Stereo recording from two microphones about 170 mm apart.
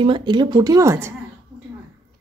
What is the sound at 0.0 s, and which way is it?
A woman's voice, 30° right (ahead or behind).